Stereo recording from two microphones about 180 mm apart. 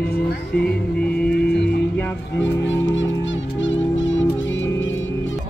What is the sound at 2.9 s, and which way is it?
Music, 90° left.